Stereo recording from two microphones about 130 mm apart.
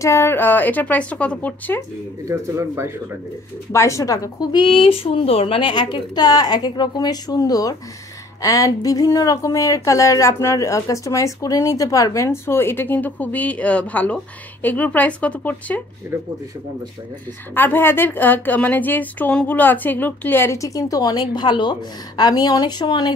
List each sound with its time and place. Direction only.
0.0 s a woman's voice: 20° left (ahead or behind)
2.2 s speech: 20° right (ahead or behind)
3.7 s speech: 25° left (ahead or behind)
17.6 s a woman's voice: 15° left (ahead or behind); by 23.1 s 35° left (ahead or behind)